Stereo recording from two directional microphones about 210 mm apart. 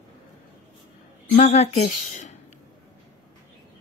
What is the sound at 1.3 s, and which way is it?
Speech, 35° left (ahead or behind).